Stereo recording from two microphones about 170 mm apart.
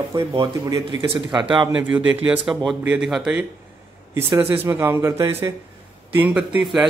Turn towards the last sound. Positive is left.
turn(degrees=-5)  # may be behind; listen again after turning